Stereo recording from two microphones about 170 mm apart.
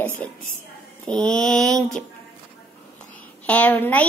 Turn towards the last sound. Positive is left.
turn(degrees=10)  # may be behind; listen again after turning